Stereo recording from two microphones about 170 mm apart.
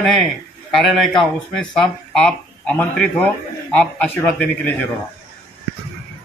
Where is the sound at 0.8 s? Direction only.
Centre (ahead or behind).